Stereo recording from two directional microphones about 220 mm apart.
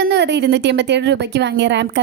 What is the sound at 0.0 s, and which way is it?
A woman's voice, 50° right (ahead or behind).